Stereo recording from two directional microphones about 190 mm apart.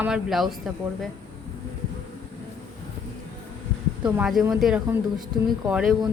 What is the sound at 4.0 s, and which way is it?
A man's voice, 10° right (ahead or behind).